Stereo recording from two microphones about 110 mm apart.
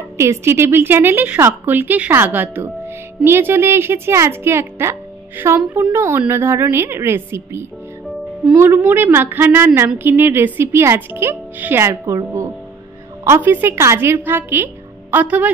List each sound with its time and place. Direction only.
0.2 s a woman's voice: 25° right (ahead or behind)